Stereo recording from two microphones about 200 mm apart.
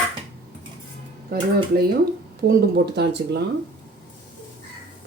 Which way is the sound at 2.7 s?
55° right (ahead or behind).